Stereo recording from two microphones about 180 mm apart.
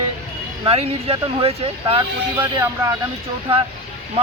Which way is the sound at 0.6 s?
35° right (ahead or behind).